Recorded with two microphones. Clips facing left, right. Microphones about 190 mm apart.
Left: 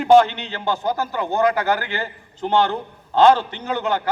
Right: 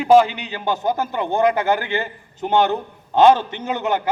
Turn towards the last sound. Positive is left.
turn(degrees=-20)  # may be behind; listen again after turning